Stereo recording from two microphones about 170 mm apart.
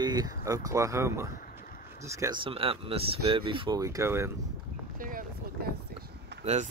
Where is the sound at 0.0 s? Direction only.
20° right (ahead or behind).